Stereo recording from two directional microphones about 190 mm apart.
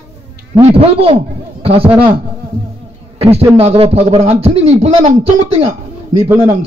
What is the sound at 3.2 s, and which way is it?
A man's voice, 35° right (ahead or behind).